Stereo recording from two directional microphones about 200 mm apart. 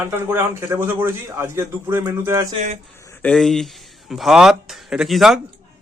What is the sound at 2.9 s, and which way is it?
Speech, 15° left (ahead or behind).